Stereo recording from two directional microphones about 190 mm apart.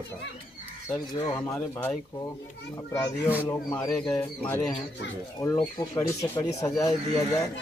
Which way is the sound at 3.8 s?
5° left (ahead or behind).